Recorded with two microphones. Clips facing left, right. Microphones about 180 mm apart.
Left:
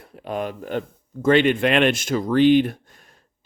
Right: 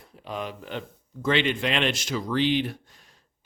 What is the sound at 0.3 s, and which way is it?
Speech, 50° left (ahead or behind).